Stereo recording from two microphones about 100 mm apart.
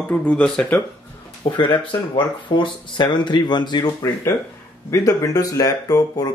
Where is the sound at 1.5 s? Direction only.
50° left (ahead or behind).